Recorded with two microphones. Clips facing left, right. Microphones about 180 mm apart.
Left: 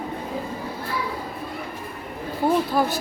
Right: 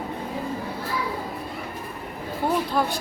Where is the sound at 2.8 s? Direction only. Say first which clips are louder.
Left 2 dB; 5° left (ahead or behind).